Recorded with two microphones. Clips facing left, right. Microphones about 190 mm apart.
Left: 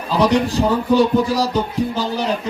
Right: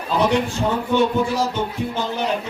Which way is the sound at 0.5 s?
35° left (ahead or behind).